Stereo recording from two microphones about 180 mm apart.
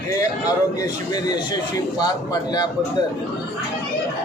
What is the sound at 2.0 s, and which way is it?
Speech, 20° left (ahead or behind).